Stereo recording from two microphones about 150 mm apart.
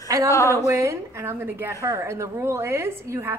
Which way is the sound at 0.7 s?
20° right (ahead or behind).